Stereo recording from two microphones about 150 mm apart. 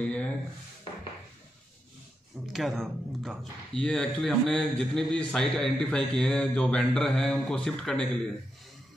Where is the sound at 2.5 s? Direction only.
Centre (ahead or behind).